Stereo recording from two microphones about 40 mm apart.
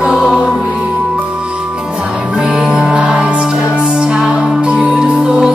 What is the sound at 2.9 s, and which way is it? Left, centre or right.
Music, right.